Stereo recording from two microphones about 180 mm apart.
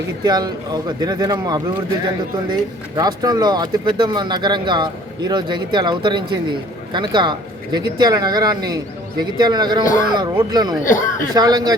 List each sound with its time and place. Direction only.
0.3 s speech: 20° right (ahead or behind)
10.8 s a man's voice: 45° left (ahead or behind)
11.3 s speech: 20° right (ahead or behind)